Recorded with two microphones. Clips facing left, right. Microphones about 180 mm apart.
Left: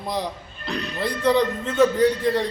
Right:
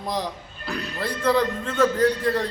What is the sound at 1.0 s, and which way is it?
Speech, 15° left (ahead or behind).